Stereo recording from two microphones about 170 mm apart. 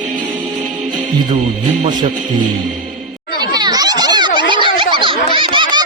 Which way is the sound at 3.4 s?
25° right (ahead or behind).